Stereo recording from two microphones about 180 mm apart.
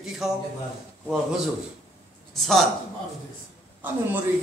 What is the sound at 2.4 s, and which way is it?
Speech, centre (ahead or behind).